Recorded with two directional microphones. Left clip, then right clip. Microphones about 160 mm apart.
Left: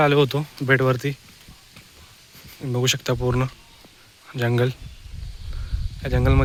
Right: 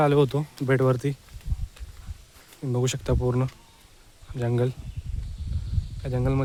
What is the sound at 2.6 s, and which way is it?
Speech, 10° right (ahead or behind).